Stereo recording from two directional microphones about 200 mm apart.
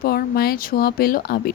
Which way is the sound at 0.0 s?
50° left (ahead or behind).